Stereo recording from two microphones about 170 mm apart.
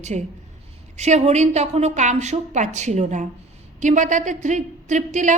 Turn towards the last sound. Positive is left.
turn(degrees=-45)  # may be behind; listen again after turning